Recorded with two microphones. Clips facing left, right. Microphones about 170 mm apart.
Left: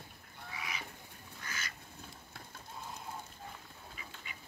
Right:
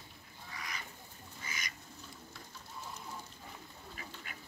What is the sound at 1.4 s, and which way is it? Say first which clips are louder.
Duck: even; 10° right (ahead or behind).